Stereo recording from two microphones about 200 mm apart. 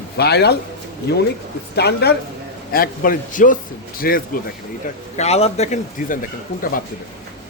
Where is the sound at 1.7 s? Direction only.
55° left (ahead or behind).